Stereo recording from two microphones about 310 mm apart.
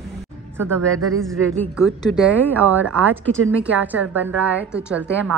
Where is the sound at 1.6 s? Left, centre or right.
Centre.